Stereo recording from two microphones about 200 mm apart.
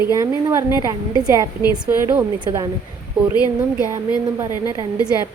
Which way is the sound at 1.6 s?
45° right (ahead or behind).